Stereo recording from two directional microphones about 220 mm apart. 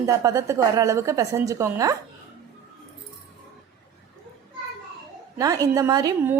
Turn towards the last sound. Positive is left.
turn(degrees=-15)  # may be behind; listen again after turning